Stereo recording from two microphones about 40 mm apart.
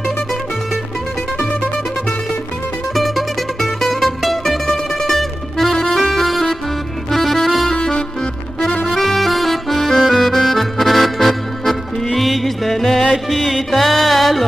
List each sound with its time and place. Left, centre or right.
2.9 s music: centre
5.9 s accordion: centre
7.7 s music: left
8.9 s accordion: centre
13.1 s music: centre